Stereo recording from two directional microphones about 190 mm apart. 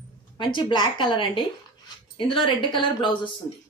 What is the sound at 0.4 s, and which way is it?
A woman's voice, 25° left (ahead or behind).